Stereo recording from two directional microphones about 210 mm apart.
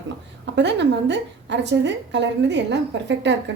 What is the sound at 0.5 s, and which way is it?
A woman's voice, 55° right (ahead or behind).